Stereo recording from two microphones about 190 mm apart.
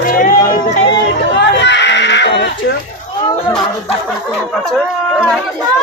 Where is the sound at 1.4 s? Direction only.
65° left (ahead or behind).